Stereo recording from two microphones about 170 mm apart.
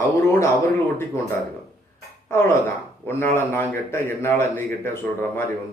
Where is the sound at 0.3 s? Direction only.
15° left (ahead or behind).